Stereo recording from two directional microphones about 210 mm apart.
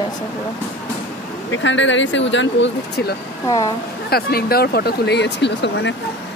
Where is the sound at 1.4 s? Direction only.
60° left (ahead or behind).